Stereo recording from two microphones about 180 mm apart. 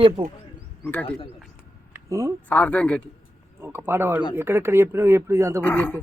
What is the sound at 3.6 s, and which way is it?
Speech, 15° right (ahead or behind).